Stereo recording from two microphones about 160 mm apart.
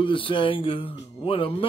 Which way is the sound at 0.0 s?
30° left (ahead or behind).